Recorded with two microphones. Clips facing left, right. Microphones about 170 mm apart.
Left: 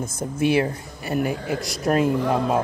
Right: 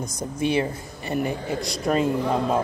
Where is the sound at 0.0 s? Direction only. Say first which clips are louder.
Left 2 dB; 25° left (ahead or behind).